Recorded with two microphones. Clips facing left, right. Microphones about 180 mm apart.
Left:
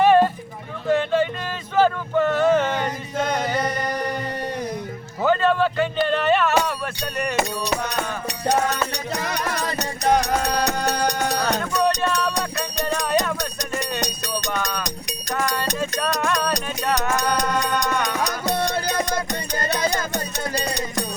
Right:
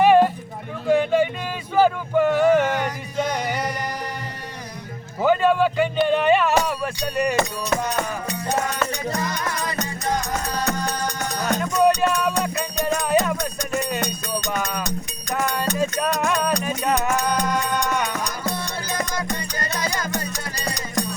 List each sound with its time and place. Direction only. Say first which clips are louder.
0.0 s a sound: right 1 dB; 10° right (ahead or behind)
5.2 s music: right 1 dB; 10° right (ahead or behind)
6.1 s a sound: right 2 dB; 10° right (ahead or behind)
7.9 s music: right 1 dB; 75° left (ahead or behind)
11.6 s music: right 3 dB; 10° right (ahead or behind)
14.5 s music: right 1 dB; 5° right (ahead or behind)
17.3 s music: even; 80° left
18.2 s music: left 4 dB; 70° left (ahead or behind)
19.5 s music: left 6 dB; 25° left (ahead or behind)